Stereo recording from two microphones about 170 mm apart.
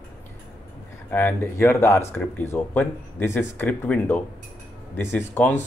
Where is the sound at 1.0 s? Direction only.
15° left (ahead or behind).